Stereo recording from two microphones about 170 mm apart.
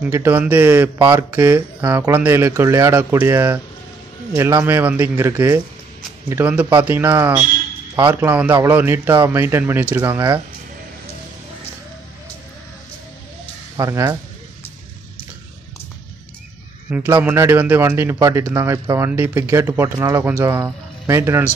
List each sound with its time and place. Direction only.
0.1 s a man's voice: 10° right (ahead or behind)
7.9 s a man's voice: 25° right (ahead or behind)
8.2 s a man's voice: 10° right (ahead or behind)
13.7 s speech: 20° right (ahead or behind)
16.9 s a man's voice: 10° right (ahead or behind)